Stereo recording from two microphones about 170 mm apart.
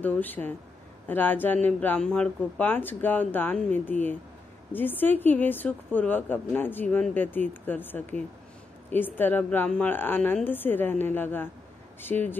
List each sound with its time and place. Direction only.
0.0 s a woman's voice: 10° left (ahead or behind)